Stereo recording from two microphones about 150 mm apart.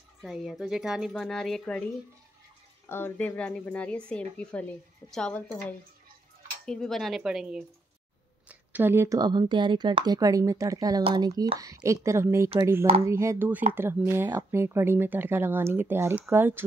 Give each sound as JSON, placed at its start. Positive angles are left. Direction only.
{"t": 0.2, "sound": "speech", "side_deg": 0}
{"t": 2.9, "sound": "a woman's voice", "side_deg": 15}